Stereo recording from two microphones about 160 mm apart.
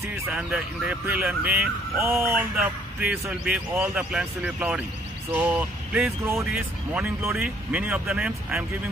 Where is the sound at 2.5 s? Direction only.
5° right (ahead or behind).